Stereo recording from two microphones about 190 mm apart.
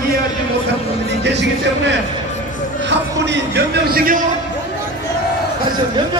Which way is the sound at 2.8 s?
65° right (ahead or behind).